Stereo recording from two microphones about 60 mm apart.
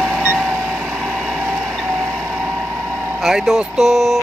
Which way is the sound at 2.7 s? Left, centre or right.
Right.